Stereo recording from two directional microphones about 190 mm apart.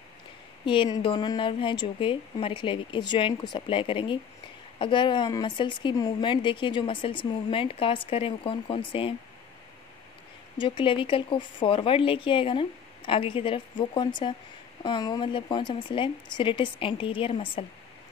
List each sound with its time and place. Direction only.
0.7 s a woman's voice: 25° left (ahead or behind)
10.6 s a woman's voice: 25° left (ahead or behind)